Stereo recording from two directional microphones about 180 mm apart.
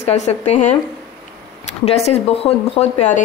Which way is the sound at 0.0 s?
35° left (ahead or behind).